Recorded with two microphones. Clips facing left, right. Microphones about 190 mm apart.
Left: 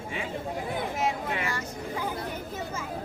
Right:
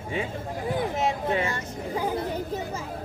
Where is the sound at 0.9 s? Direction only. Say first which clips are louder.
Right 4 dB; 25° right (ahead or behind).